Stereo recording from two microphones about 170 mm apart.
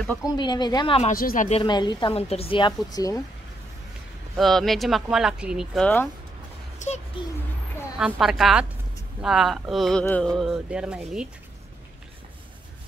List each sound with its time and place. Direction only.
0.2 s a woman's voice: 25° left (ahead or behind)
1.1 s speech: 55° left (ahead or behind)
1.5 s a woman's voice: 30° left (ahead or behind)
4.4 s speech: centre (ahead or behind)
6.8 s a child's voice: 45° left (ahead or behind)
8.0 s speech: centre (ahead or behind)